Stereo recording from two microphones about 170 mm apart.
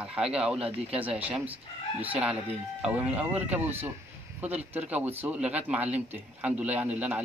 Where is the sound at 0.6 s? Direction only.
35° right (ahead or behind).